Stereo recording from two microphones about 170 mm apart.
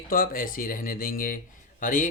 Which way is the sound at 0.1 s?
55° left (ahead or behind).